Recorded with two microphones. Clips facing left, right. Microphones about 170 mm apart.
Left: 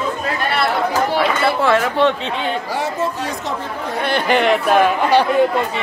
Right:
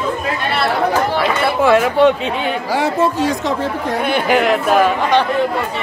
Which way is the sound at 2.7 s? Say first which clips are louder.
Right 5 dB; 90° right.